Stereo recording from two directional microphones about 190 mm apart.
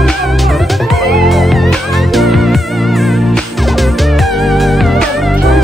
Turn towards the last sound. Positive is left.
turn(degrees=0)  # may be behind; listen again after turning